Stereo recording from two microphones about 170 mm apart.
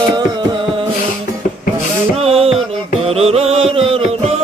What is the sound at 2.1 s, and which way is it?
Music, 35° right (ahead or behind).